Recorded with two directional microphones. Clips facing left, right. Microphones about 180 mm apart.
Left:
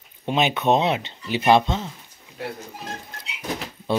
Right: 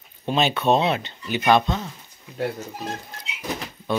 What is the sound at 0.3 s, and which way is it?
Speech, 15° left (ahead or behind).